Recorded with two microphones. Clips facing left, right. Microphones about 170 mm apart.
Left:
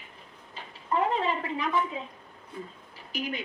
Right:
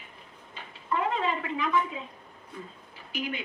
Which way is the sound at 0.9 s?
35° left (ahead or behind).